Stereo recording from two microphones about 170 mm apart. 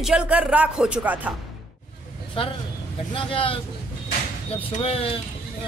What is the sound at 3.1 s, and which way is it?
Speech, 30° left (ahead or behind).